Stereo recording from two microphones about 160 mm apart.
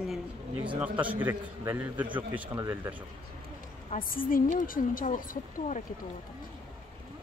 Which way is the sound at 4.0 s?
60° left (ahead or behind).